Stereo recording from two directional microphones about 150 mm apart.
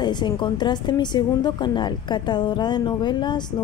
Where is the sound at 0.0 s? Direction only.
30° left (ahead or behind).